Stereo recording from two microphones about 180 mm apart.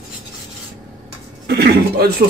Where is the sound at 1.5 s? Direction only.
60° right (ahead or behind).